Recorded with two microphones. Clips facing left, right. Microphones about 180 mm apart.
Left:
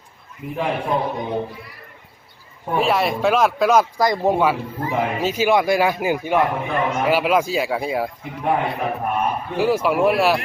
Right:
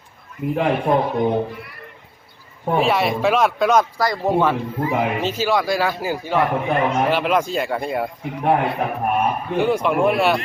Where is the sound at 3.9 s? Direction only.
20° left (ahead or behind).